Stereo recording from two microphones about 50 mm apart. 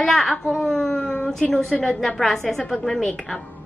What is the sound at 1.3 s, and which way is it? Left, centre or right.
A woman's voice, centre.